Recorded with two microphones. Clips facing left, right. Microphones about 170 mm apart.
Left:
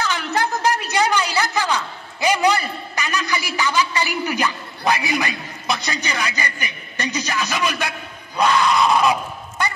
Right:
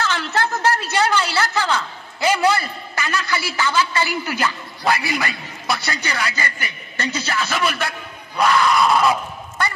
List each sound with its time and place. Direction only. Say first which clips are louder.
0.0 s a woman's voice: even; 15° left (ahead or behind)